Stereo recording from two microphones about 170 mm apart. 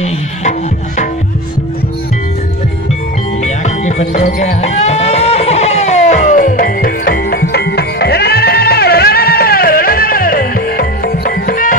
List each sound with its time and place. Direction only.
0.0 s tabla: 45° left (ahead or behind)
3.6 s music: 45° left (ahead or behind)